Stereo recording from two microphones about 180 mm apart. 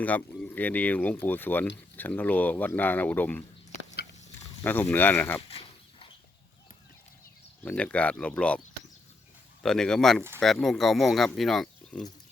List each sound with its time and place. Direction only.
0.0 s speech: 10° left (ahead or behind)
4.6 s speech: 10° left (ahead or behind)
5.5 s a sound: 30° left (ahead or behind)
7.6 s speech: 10° left (ahead or behind)
9.6 s speech: 5° left (ahead or behind)